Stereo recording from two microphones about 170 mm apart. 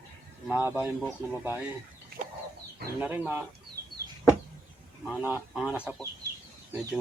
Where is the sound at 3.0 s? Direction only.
10° right (ahead or behind).